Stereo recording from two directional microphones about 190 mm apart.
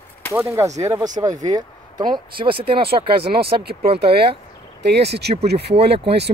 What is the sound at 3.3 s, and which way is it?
A man's voice, 55° right (ahead or behind).